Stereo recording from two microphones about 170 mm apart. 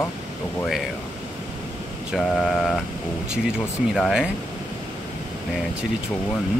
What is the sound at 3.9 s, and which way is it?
Speech, centre (ahead or behind).